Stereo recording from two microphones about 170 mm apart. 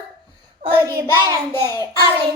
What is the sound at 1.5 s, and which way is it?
Speech, 15° left (ahead or behind).